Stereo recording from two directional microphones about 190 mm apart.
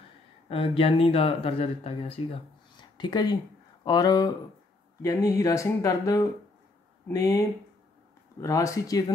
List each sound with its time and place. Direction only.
0.5 s speech: 30° left (ahead or behind)